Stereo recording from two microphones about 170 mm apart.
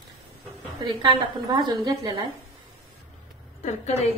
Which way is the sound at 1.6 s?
25° right (ahead or behind).